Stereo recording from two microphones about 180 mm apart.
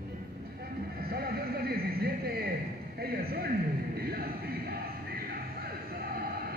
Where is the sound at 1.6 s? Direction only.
60° right (ahead or behind).